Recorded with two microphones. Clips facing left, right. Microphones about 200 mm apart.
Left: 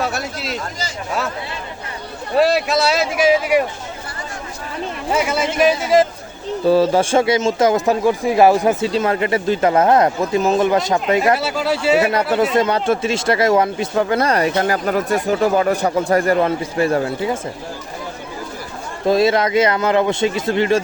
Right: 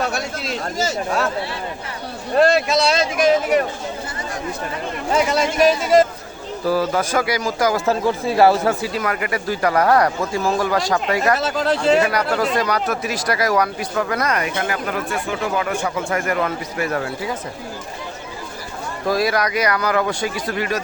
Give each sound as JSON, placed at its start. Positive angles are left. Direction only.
{"t": 0.0, "sound": "a sound", "side_deg": 5}
{"t": 2.3, "sound": "speech", "side_deg": 5}
{"t": 5.1, "sound": "speech", "side_deg": 5}
{"t": 6.7, "sound": "speech", "side_deg": 30}
{"t": 11.3, "sound": "speech", "side_deg": 10}
{"t": 12.5, "sound": "speech", "side_deg": 25}
{"t": 19.0, "sound": "speech", "side_deg": 25}